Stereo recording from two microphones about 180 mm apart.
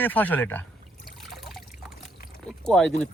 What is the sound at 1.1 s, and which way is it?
Trickle, centre (ahead or behind).